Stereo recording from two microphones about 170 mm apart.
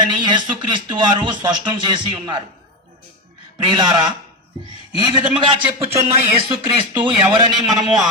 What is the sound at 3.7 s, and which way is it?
Speech, 25° right (ahead or behind).